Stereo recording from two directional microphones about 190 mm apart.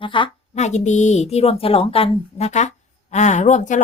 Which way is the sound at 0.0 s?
25° left (ahead or behind).